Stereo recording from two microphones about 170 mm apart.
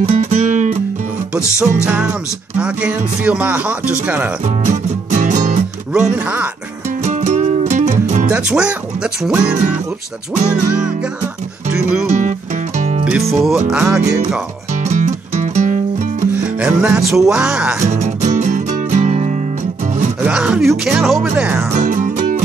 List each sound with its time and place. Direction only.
0.1 s music: 45° right (ahead or behind)
1.4 s music: 15° left (ahead or behind)
2.5 s speech: 5° right (ahead or behind)
4.6 s music: 45° right (ahead or behind)
5.9 s speech: 10° right (ahead or behind)
7.1 s music: 45° right (ahead or behind)
8.3 s speech: 5° right (ahead or behind)
12.1 s music: 45° right (ahead or behind)
13.4 s speech: centre (ahead or behind)
14.8 s music: 45° right (ahead or behind)
16.5 s speech: 5° right (ahead or behind)
17.8 s music: 45° right (ahead or behind)
20.2 s speech: 5° right (ahead or behind)
21.8 s music: 50° right (ahead or behind)